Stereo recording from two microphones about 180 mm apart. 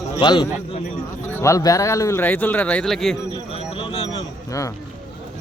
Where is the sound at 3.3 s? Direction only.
30° left (ahead or behind).